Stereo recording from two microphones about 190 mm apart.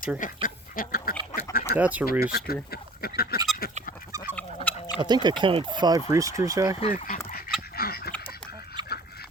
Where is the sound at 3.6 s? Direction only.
50° left (ahead or behind).